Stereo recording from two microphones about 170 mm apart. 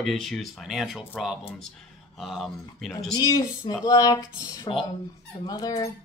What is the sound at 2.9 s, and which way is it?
Speech, 20° left (ahead or behind).